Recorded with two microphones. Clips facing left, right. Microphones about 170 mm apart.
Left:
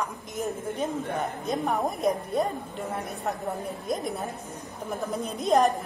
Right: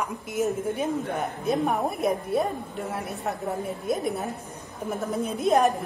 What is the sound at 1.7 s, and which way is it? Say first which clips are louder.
Speech: right 1 dB; 5° right (ahead or behind).